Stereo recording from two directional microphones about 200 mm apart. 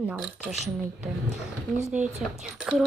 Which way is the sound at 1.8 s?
5° right (ahead or behind).